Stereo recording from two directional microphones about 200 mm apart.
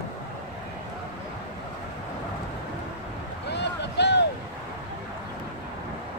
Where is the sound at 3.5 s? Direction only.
60° left (ahead or behind).